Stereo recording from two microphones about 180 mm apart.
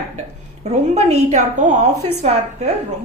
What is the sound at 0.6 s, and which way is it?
A woman's voice, 40° right (ahead or behind).